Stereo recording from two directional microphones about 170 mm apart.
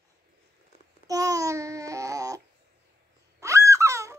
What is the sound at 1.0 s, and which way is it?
Babbling, 20° right (ahead or behind).